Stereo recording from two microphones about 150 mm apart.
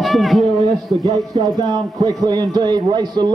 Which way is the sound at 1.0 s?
20° right (ahead or behind).